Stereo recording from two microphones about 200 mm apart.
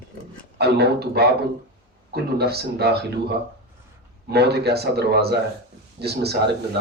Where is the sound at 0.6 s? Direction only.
55° right (ahead or behind).